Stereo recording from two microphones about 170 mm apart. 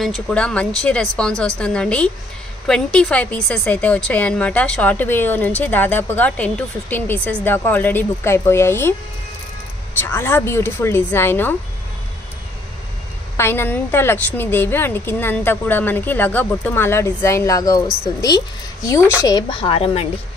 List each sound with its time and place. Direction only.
0.0 s a woman's voice: 5° left (ahead or behind)
9.9 s a woman's voice: 15° left (ahead or behind)
13.4 s a woman's voice: 15° left (ahead or behind); by 20.1 s 35° left (ahead or behind)